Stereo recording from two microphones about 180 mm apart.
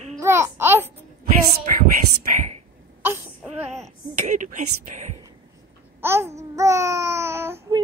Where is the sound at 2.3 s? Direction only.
40° right (ahead or behind).